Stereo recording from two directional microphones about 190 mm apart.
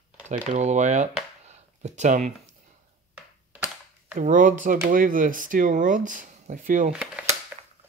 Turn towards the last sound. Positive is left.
turn(degrees=-10)  # may be behind; listen again after turning